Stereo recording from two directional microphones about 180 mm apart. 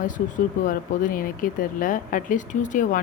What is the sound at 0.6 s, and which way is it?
Speech, 50° left (ahead or behind).